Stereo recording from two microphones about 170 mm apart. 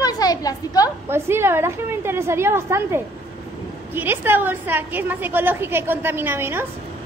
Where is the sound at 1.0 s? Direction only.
15° right (ahead or behind).